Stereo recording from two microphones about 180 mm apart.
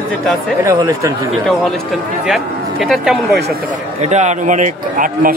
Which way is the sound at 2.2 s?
Centre (ahead or behind).